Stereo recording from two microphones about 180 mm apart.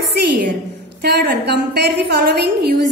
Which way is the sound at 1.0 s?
60° right (ahead or behind).